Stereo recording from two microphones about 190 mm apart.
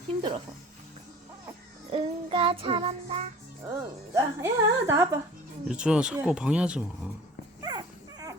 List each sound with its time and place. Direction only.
1.9 s music: 30° right (ahead or behind)
3.7 s speech: 20° right (ahead or behind)
7.6 s dog: 20° right (ahead or behind)